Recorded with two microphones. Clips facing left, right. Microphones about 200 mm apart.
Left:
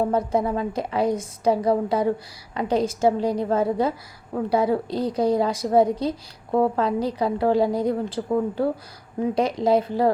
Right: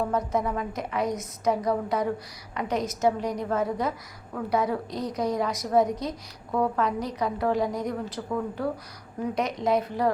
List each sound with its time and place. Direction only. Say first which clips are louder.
0.0 s a woman's voice: left 4 dB; 30° left (ahead or behind)